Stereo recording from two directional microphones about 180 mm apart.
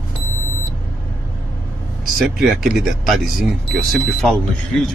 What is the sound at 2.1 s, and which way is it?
Speech, centre (ahead or behind).